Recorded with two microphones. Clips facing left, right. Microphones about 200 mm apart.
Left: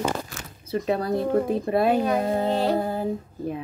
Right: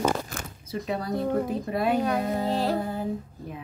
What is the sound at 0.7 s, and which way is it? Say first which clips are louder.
Speech: left 6 dB; 60° left (ahead or behind).